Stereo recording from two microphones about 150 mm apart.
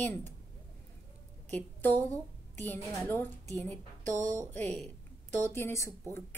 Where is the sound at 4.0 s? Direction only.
55° right (ahead or behind).